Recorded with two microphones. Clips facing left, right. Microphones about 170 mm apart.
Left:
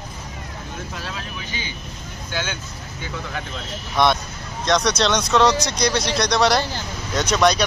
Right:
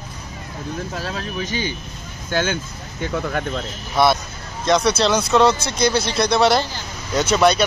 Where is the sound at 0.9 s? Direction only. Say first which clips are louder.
Right 6 dB; 40° right (ahead or behind).